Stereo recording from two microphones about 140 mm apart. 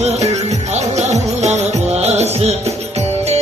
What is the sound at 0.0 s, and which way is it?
Music, 55° right (ahead or behind).